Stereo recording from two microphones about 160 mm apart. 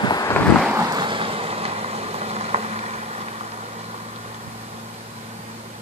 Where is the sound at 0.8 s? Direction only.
25° right (ahead or behind); by 3.6 s 45° right (ahead or behind).